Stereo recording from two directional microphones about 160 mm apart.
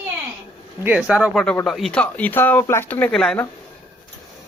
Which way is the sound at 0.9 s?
5° right (ahead or behind).